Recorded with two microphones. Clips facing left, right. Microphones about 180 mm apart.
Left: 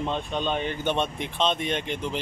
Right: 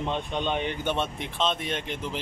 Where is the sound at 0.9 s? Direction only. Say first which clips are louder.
Left 2 dB; centre (ahead or behind).